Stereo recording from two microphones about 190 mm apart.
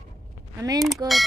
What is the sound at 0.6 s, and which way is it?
Speech, 20° right (ahead or behind).